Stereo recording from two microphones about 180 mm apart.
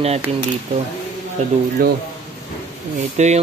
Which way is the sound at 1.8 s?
55° right (ahead or behind).